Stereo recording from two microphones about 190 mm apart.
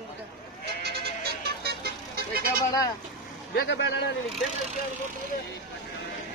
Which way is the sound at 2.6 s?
20° left (ahead or behind).